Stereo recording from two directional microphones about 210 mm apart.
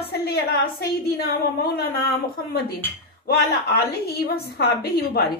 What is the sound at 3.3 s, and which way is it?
A woman's voice, 50° left (ahead or behind).